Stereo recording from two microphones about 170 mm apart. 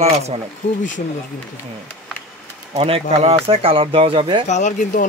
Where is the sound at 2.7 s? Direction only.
35° right (ahead or behind).